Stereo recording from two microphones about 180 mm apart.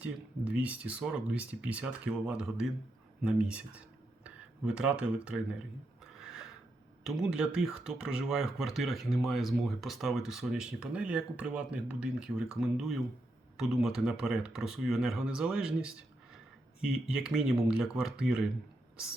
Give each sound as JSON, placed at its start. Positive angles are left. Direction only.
{"t": 0.0, "sound": "speech", "side_deg": -5}
{"t": 6.1, "sound": "a sound", "side_deg": 0}
{"t": 7.0, "sound": "speech", "side_deg": -5}